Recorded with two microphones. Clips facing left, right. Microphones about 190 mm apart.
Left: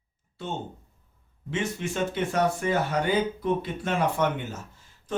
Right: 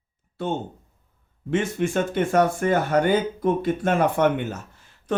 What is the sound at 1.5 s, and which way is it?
Speech, 55° right (ahead or behind).